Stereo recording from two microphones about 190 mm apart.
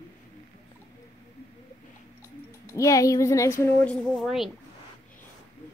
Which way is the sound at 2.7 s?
15° left (ahead or behind).